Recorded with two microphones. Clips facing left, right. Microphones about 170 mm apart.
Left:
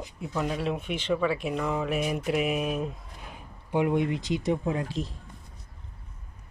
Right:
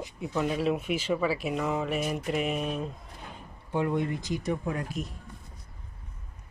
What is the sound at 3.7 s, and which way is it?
Speech, 15° left (ahead or behind).